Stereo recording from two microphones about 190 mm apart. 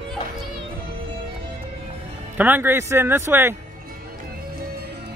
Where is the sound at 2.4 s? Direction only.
10° right (ahead or behind).